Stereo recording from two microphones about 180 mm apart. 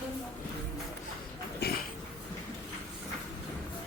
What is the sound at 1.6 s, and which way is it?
Dog, 60° left (ahead or behind).